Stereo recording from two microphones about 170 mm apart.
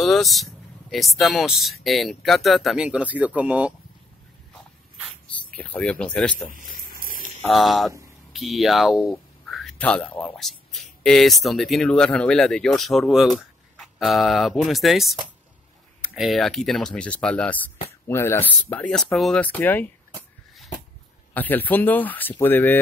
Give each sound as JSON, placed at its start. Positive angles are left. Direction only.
{"t": 0.0, "sound": "speech", "side_deg": 0}
{"t": 5.6, "sound": "speech", "side_deg": 10}
{"t": 6.5, "sound": "a sound", "side_deg": -55}
{"t": 7.4, "sound": "speech", "side_deg": 0}
{"t": 16.2, "sound": "speech", "side_deg": 0}
{"t": 21.3, "sound": "speech", "side_deg": 10}